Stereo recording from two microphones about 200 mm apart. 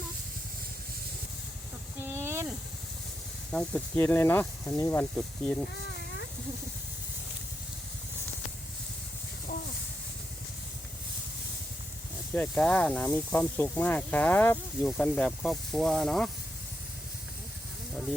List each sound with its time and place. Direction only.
2.0 s snake: 10° right (ahead or behind)
3.5 s speech: 5° left (ahead or behind)
9.5 s a sound: 50° left (ahead or behind)
12.3 s speech: 5° left (ahead or behind)